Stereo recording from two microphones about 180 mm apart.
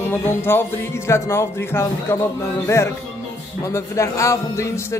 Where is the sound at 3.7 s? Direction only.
15° left (ahead or behind).